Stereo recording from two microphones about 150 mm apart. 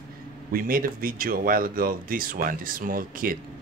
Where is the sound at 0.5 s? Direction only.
70° right (ahead or behind).